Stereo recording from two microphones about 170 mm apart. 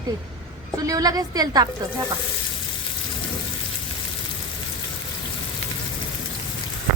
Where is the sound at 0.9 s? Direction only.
20° right (ahead or behind).